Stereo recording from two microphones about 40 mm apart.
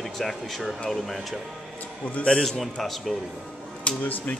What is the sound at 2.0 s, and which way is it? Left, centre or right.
Speech, left.